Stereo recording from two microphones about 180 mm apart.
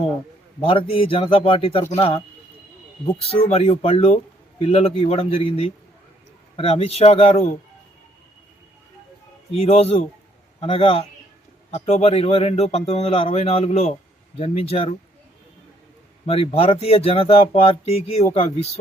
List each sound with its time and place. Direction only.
0.6 s speech: 30° left (ahead or behind)
9.5 s speech: 35° left (ahead or behind)
16.2 s speech: 35° left (ahead or behind)